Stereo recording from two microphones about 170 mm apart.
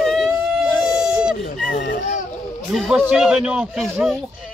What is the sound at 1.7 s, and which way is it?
Speech, 90° left.